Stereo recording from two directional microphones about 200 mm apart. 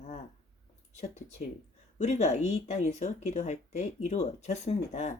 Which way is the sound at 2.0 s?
35° left (ahead or behind).